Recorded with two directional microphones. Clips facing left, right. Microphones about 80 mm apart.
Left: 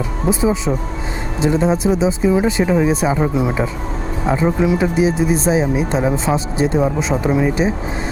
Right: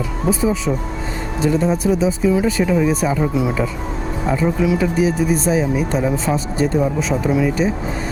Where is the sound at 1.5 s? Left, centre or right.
Left.